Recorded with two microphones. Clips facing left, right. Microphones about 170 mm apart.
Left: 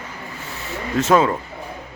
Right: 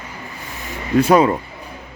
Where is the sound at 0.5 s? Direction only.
15° right (ahead or behind).